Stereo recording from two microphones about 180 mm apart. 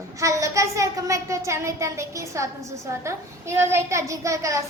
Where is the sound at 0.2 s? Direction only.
15° right (ahead or behind).